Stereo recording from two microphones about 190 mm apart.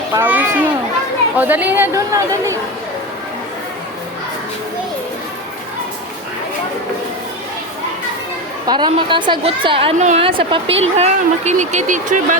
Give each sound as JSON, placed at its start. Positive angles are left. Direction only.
{"t": 0.2, "sound": "a child's voice", "side_deg": -10}
{"t": 8.6, "sound": "a woman's voice", "side_deg": -25}